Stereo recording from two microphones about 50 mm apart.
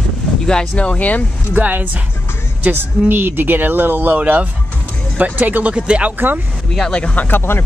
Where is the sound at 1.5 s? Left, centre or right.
Right.